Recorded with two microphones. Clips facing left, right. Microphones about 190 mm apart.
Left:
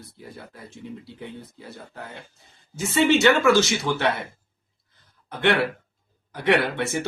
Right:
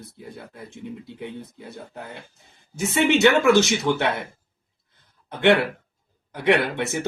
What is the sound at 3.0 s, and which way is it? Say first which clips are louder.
Speech: right 1 dB; 20° right (ahead or behind).